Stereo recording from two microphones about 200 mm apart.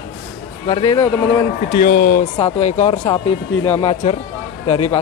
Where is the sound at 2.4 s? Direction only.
30° left (ahead or behind).